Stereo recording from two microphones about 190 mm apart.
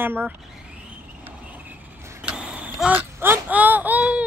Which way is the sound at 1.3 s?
10° right (ahead or behind).